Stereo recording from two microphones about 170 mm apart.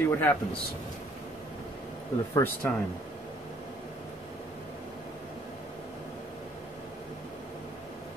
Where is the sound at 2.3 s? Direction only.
10° left (ahead or behind).